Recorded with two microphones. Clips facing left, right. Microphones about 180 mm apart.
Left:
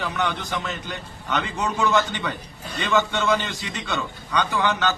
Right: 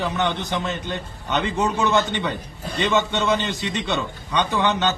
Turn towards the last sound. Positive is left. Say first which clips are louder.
# right 2 dB
turn(degrees=-20)  # may be behind; listen again after turning